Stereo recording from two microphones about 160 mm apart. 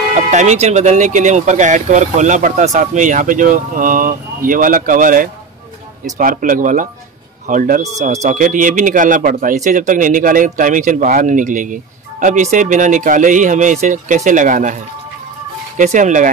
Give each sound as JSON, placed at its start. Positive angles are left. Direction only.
{"t": 0.1, "sound": "speech", "side_deg": -50}
{"t": 15.8, "sound": "speech", "side_deg": -50}